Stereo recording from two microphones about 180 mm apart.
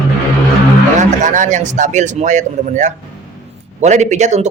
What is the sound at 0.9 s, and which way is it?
A man's voice, 45° right (ahead or behind).